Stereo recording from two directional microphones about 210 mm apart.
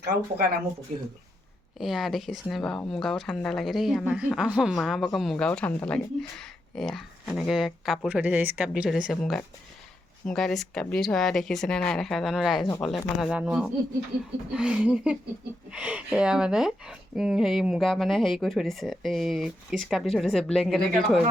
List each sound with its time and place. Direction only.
0.0 s speech: 50° right (ahead or behind)
1.8 s speech: centre (ahead or behind)